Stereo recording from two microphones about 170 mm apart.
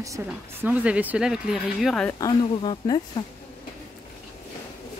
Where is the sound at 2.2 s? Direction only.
25° left (ahead or behind).